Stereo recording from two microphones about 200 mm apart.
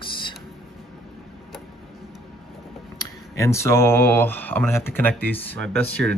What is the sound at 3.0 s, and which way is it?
Speech, 15° left (ahead or behind).